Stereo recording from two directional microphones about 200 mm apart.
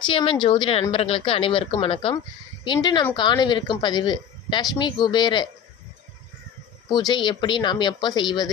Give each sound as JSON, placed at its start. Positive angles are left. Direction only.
{"t": 0.0, "sound": "a woman's voice", "side_deg": 25}
{"t": 7.1, "sound": "a woman's voice", "side_deg": 20}